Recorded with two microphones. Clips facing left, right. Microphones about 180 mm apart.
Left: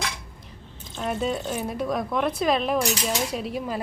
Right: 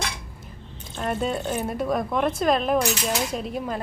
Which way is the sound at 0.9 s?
Centre (ahead or behind).